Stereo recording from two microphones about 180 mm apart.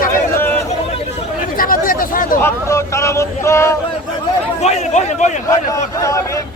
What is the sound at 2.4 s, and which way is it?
Speech, 15° left (ahead or behind).